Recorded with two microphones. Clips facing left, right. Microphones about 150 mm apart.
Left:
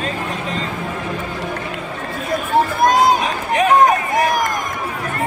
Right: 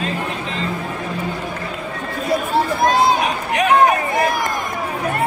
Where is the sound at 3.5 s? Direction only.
35° left (ahead or behind).